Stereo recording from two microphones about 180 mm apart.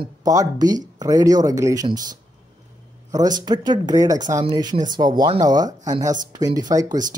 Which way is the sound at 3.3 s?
25° right (ahead or behind).